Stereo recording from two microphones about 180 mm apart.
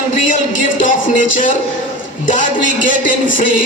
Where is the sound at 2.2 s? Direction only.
45° left (ahead or behind).